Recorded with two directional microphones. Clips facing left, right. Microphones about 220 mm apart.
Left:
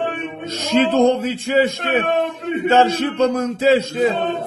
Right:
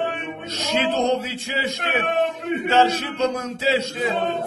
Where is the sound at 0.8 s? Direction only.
50° left (ahead or behind).